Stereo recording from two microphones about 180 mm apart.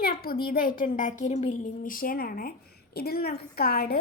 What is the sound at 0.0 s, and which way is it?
A child's voice, 55° left (ahead or behind).